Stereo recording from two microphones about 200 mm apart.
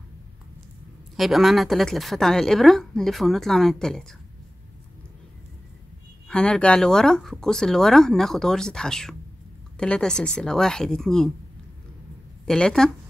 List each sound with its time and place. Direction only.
1.1 s a woman's voice: centre (ahead or behind)
6.2 s a woman's voice: 5° left (ahead or behind)
12.4 s a woman's voice: 5° left (ahead or behind)